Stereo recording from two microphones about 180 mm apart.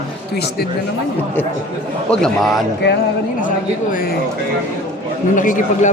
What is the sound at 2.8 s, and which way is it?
Speech, 75° left (ahead or behind).